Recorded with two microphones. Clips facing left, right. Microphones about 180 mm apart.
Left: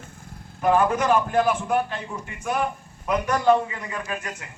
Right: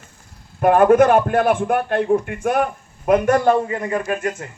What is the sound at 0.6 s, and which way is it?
A man's voice, 55° right (ahead or behind).